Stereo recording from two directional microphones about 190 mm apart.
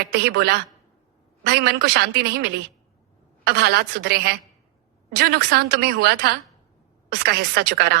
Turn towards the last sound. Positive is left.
turn(degrees=-60)  # may be behind; listen again after turning